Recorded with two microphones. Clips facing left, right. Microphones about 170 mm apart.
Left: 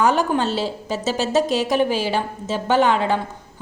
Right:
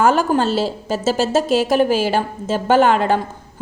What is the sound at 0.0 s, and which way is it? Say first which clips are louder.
A woman's voice: right 3 dB; 45° right (ahead or behind).